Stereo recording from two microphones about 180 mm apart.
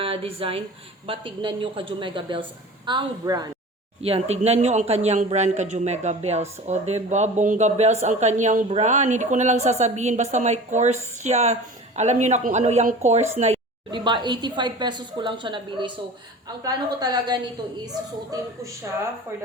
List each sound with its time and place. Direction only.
0.0 s a woman's voice: 30° right (ahead or behind)
4.0 s a man's voice: 35° right (ahead or behind)
13.9 s a woman's voice: 25° right (ahead or behind)